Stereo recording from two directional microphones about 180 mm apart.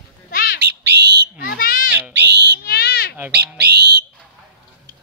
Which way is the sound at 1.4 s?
55° left (ahead or behind).